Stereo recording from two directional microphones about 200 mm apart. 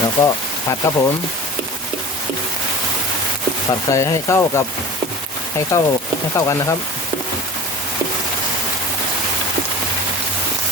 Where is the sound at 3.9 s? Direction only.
15° left (ahead or behind).